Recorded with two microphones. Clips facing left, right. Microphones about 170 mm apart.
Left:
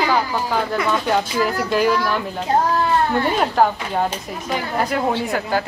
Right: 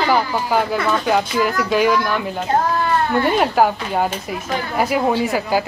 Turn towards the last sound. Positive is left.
turn(degrees=-5)  # may be behind; listen again after turning